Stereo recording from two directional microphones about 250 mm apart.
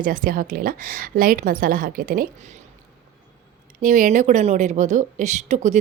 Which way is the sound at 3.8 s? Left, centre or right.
Right.